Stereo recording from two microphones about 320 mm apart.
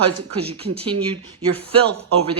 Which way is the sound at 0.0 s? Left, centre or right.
Centre.